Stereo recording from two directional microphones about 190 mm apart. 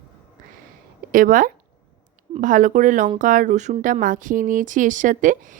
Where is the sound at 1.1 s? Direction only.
45° right (ahead or behind).